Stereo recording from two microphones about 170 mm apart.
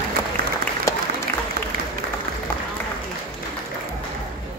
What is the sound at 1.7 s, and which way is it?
Applause, 60° right (ahead or behind).